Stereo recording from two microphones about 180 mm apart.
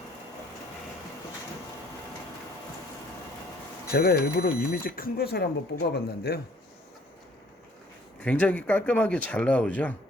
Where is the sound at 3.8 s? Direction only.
60° left (ahead or behind).